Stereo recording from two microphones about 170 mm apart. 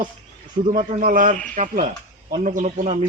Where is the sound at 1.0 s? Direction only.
50° right (ahead or behind).